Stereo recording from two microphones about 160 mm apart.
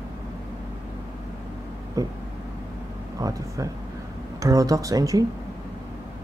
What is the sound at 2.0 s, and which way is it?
Speech, 20° right (ahead or behind).